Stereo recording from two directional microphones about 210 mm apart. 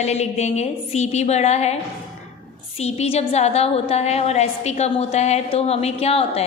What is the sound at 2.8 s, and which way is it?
A woman's voice, 30° left (ahead or behind).